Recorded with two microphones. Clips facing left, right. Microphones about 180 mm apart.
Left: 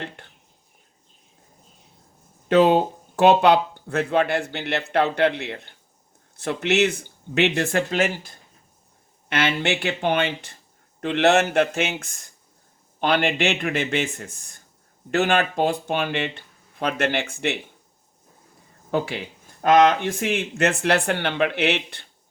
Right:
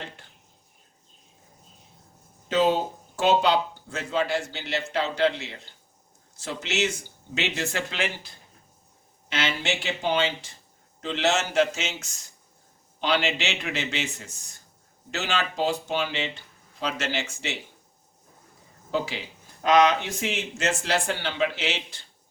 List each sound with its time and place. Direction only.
0.2 s a sound: 60° left (ahead or behind)
2.5 s a man's voice: 60° left (ahead or behind)
9.3 s a man's voice: 60° left (ahead or behind)
18.9 s speech: 55° left (ahead or behind)